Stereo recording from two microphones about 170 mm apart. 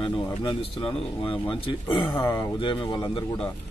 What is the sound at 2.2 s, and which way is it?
Speech, 20° left (ahead or behind).